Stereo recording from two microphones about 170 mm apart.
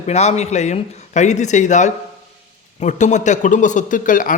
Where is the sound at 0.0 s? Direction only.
40° left (ahead or behind).